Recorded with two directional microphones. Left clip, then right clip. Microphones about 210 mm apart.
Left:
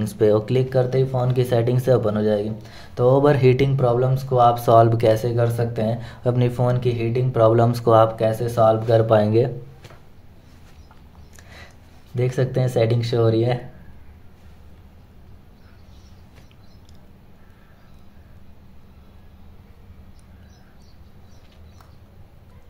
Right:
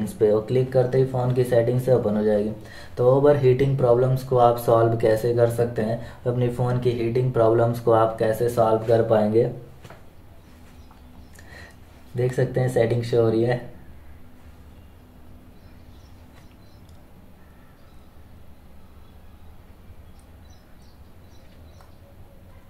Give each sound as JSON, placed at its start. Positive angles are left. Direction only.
{"t": 0.0, "sound": "speech", "side_deg": 45}
{"t": 6.2, "sound": "speech", "side_deg": 40}
{"t": 8.2, "sound": "speech", "side_deg": 20}
{"t": 8.9, "sound": "speech", "side_deg": 45}
{"t": 12.2, "sound": "speech", "side_deg": 35}